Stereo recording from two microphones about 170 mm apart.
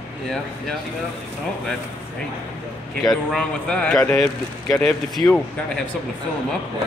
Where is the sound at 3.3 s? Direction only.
5° left (ahead or behind).